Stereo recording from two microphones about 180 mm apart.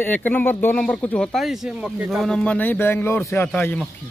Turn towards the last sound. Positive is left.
turn(degrees=10)  # may be behind; listen again after turning